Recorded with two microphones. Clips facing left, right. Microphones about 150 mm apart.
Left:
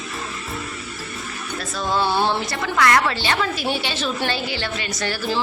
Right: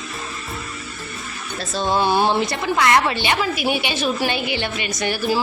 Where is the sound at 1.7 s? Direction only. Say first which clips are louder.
Right 3 dB; 25° right (ahead or behind).